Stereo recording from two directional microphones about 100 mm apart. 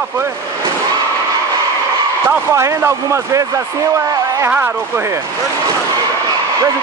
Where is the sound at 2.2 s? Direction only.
30° right (ahead or behind).